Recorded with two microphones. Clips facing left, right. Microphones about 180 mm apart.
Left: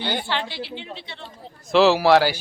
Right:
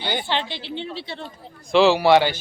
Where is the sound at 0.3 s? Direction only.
20° right (ahead or behind); by 1.3 s 40° right (ahead or behind).